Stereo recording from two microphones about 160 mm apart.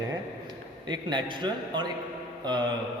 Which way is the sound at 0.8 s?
30° right (ahead or behind).